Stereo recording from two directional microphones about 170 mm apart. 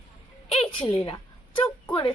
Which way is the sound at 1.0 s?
30° left (ahead or behind).